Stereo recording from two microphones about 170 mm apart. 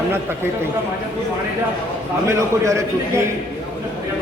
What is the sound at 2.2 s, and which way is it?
Speech, 15° right (ahead or behind).